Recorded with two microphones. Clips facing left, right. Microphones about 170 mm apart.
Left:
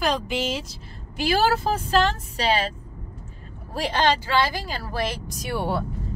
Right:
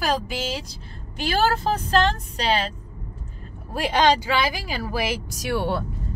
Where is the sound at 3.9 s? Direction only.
15° right (ahead or behind).